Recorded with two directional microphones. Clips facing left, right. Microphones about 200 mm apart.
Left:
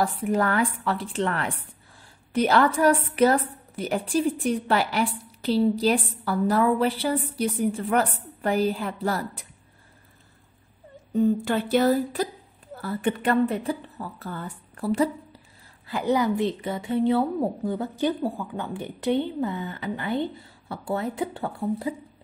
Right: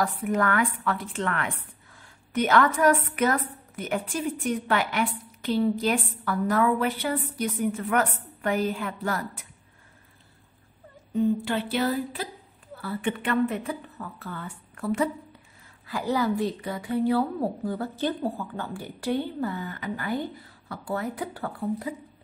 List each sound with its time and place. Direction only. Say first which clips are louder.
0.0 s a woman's voice: left 2 dB; 30° left (ahead or behind)
11.1 s a sound: left 2 dB; 45° left (ahead or behind)
12.7 s a woman's voice: left 3 dB; 40° left (ahead or behind)
15.9 s a woman's voice: left 3 dB; 20° left (ahead or behind)